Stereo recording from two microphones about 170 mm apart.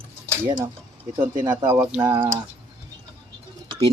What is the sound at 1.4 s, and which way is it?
Speech, 15° right (ahead or behind).